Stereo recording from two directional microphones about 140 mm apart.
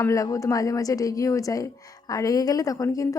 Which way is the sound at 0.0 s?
25° left (ahead or behind).